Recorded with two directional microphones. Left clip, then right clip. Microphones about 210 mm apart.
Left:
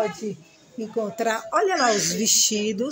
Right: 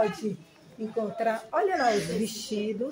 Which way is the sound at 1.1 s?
50° left (ahead or behind).